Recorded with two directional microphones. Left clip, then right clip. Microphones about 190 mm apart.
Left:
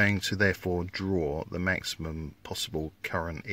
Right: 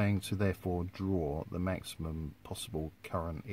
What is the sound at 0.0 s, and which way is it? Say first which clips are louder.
Speech: left 10 dB; 15° left (ahead or behind).